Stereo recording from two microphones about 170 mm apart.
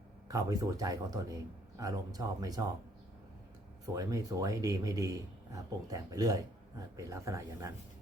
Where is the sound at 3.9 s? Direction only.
20° right (ahead or behind).